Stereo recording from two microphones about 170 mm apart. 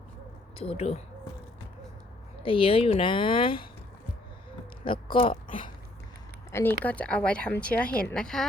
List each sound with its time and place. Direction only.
0.6 s speech: 40° left (ahead or behind)
2.4 s speech: 30° left (ahead or behind)
4.9 s speech: 30° left (ahead or behind)
6.5 s speech: 15° left (ahead or behind)